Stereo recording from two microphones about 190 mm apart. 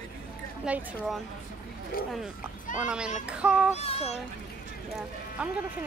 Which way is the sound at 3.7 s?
35° left (ahead or behind).